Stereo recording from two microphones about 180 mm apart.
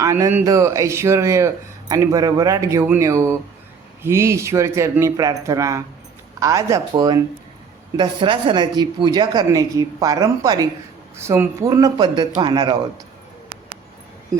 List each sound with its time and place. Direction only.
0.0 s a woman's voice: 15° right (ahead or behind)